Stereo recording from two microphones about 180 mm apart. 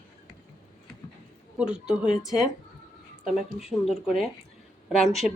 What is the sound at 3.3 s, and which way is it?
Speech, centre (ahead or behind).